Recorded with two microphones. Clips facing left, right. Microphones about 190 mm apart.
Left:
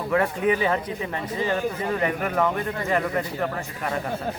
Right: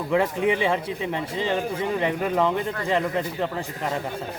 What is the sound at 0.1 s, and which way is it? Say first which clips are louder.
Speech: even; 20° right (ahead or behind).